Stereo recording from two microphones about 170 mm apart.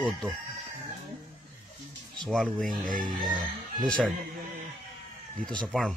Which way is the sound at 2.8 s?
50° right (ahead or behind).